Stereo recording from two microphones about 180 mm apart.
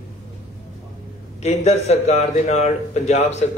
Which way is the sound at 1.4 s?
35° left (ahead or behind).